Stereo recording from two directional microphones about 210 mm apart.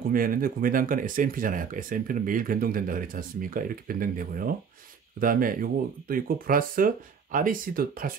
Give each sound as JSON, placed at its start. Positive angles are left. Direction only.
{"t": 0.1, "sound": "speech", "side_deg": -40}